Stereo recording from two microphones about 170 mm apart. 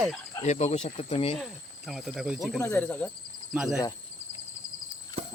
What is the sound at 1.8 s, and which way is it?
Speech, centre (ahead or behind).